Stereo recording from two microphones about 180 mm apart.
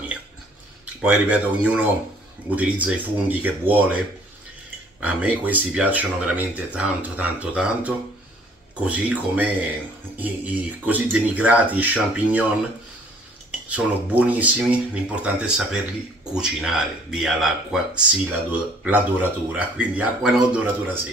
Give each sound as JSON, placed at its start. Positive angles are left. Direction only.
{"t": 1.0, "sound": "speech", "side_deg": -10}
{"t": 5.0, "sound": "speech", "side_deg": -10}
{"t": 13.7, "sound": "speech", "side_deg": -10}